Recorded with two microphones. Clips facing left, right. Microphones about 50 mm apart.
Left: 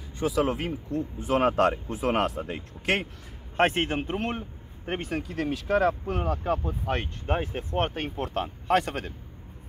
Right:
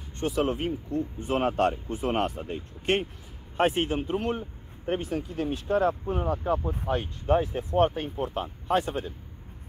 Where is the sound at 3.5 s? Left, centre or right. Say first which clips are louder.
Left 1 dB; left.